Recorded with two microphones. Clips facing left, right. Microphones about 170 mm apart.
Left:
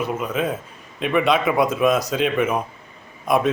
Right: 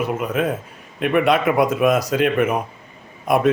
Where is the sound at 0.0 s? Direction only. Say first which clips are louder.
Right 2 dB; 10° right (ahead or behind).